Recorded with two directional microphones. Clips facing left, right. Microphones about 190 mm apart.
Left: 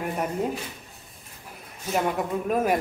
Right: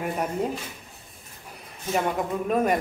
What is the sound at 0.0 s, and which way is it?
Speech, centre (ahead or behind).